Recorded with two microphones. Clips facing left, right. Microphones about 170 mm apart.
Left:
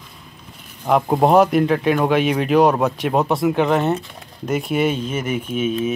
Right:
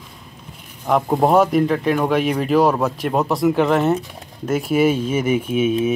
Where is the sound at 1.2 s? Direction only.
Centre (ahead or behind).